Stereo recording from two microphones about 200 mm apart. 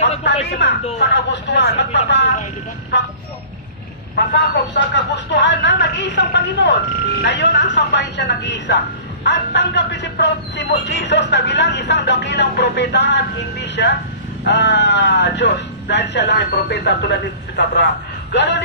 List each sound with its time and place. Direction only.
0.6 s a man's voice: 60° left (ahead or behind)
4.3 s a man's voice: 60° left (ahead or behind)